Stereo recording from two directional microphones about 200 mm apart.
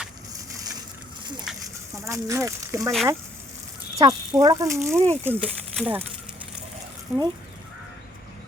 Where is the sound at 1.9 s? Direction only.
15° right (ahead or behind).